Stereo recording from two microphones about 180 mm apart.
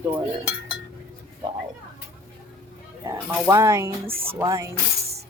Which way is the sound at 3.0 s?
15° right (ahead or behind).